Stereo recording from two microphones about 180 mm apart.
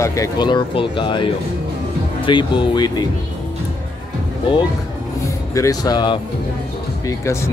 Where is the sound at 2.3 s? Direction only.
25° left (ahead or behind).